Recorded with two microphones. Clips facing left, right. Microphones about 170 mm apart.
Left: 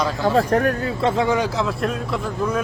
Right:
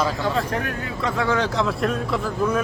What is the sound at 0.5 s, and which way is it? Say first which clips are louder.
Speech: left 8 dB; 40° left (ahead or behind).